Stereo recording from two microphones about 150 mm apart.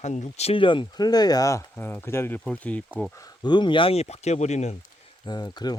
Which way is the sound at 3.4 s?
30° left (ahead or behind).